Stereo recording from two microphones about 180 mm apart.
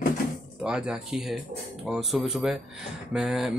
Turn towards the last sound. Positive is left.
turn(degrees=0)  # may be behind; listen again after turning